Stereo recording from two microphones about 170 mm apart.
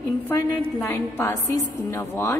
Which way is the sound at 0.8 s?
15° left (ahead or behind).